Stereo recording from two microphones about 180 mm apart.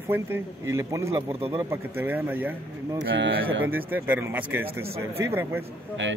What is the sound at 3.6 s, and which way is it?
Speech, 10° right (ahead or behind).